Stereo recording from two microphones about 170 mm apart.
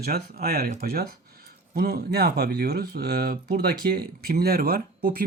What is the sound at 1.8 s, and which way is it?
Speech, 65° right (ahead or behind).